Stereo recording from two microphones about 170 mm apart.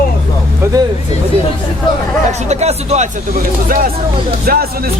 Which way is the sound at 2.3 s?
40° right (ahead or behind).